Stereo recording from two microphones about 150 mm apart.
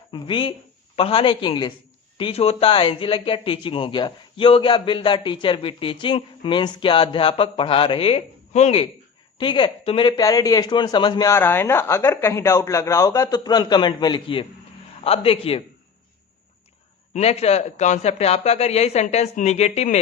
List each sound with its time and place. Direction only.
0.1 s speech: 35° left (ahead or behind)
9.4 s speech: 30° left (ahead or behind)
17.2 s speech: 45° left (ahead or behind)